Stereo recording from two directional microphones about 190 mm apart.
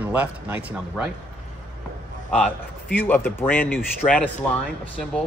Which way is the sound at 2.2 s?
5° left (ahead or behind).